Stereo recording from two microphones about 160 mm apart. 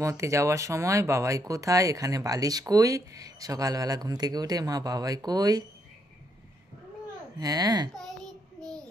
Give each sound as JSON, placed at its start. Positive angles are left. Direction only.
{"t": 0.0, "sound": "speech", "side_deg": -20}
{"t": 7.3, "sound": "speech", "side_deg": -25}
{"t": 8.5, "sound": "child singing", "side_deg": 5}